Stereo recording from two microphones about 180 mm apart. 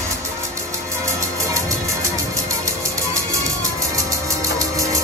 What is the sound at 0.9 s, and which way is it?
Music, 15° right (ahead or behind).